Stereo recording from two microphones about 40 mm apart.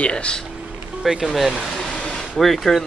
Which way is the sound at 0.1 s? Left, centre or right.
Left.